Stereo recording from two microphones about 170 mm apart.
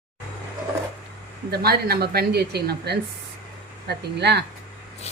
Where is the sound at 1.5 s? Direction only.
65° right (ahead or behind).